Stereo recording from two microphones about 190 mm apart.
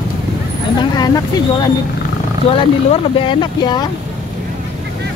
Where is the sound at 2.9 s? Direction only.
25° left (ahead or behind).